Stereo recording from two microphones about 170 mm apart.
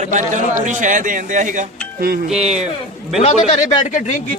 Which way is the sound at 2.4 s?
40° right (ahead or behind).